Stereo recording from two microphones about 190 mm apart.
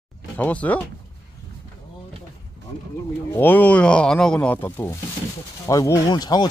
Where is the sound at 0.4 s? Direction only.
10° left (ahead or behind).